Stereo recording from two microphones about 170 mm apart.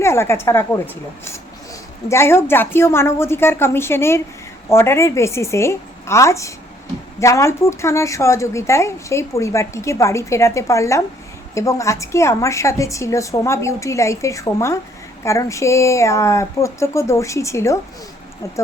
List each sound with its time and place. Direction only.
0.0 s a woman's voice: 15° left (ahead or behind)
2.0 s a woman's voice: 15° left (ahead or behind)